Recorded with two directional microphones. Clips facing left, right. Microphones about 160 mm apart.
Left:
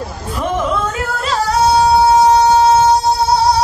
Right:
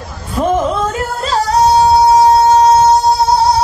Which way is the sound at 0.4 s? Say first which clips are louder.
Right 4 dB; 35° right (ahead or behind).